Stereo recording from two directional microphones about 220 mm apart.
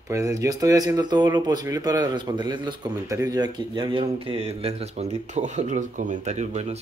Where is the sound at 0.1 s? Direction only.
15° right (ahead or behind).